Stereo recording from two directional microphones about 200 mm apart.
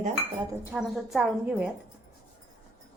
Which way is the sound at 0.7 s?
5° right (ahead or behind).